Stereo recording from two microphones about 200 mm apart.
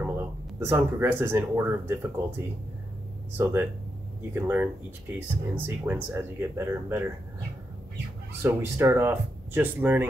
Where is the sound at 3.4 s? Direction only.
10° right (ahead or behind).